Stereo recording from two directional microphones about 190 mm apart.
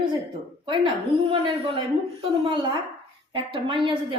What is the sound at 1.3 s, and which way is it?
Speech, 30° right (ahead or behind).